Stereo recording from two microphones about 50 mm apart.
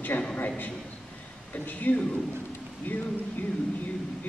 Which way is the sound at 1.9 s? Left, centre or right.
Left.